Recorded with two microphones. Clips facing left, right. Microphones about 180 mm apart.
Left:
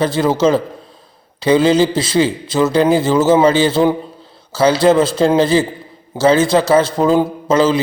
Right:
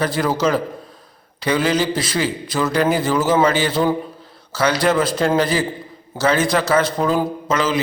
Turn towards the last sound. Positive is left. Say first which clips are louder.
# left 6 dB
turn(degrees=30)  # may be behind; listen again after turning